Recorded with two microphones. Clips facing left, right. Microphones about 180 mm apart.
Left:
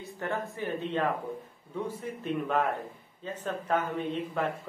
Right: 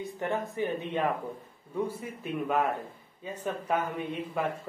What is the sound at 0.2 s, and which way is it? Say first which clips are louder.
Speech: right 2 dB; 15° right (ahead or behind).